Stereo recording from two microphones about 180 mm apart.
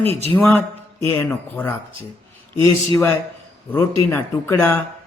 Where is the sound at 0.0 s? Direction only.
35° right (ahead or behind).